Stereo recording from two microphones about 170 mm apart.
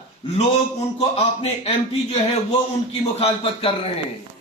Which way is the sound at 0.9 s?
35° left (ahead or behind).